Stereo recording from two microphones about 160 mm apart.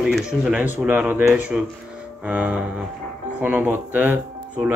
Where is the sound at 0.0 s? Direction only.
5° right (ahead or behind).